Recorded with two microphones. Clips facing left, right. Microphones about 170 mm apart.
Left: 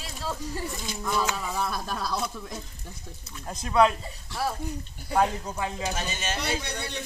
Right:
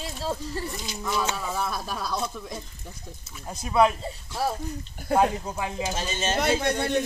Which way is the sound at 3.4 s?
5° right (ahead or behind).